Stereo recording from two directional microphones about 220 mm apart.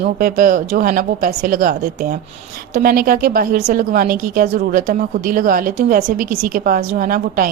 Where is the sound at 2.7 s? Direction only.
40° right (ahead or behind).